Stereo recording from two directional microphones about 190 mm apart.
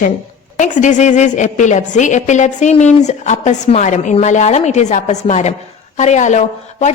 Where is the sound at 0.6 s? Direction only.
40° left (ahead or behind).